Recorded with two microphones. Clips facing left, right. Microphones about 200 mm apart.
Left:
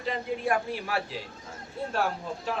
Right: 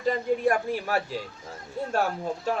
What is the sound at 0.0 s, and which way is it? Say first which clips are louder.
Speech: right 6 dB; 45° right (ahead or behind).